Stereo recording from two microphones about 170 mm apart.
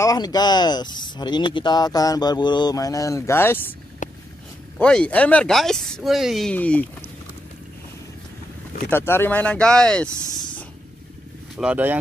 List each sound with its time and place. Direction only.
0.0 s speech: 20° left (ahead or behind)
4.0 s a sound: 50° left (ahead or behind)
4.7 s speech: 5° left (ahead or behind)
8.9 s speech: 15° left (ahead or behind)
11.5 s speech: 5° right (ahead or behind)